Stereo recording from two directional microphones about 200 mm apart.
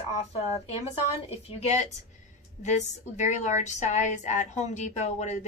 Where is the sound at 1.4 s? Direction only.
30° left (ahead or behind).